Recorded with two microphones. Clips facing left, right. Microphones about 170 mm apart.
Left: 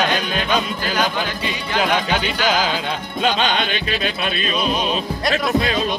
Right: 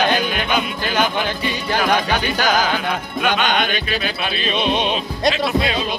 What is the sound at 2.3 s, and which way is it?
Music, 40° right (ahead or behind).